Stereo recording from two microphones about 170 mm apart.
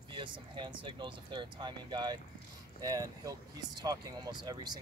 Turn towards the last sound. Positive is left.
turn(degrees=-25)  # may be behind; listen again after turning